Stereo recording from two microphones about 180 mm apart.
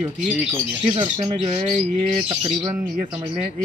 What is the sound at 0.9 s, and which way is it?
Speech, 30° right (ahead or behind).